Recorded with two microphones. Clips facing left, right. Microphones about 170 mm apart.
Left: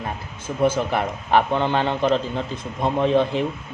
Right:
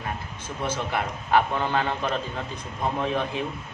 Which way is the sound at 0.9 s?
30° left (ahead or behind).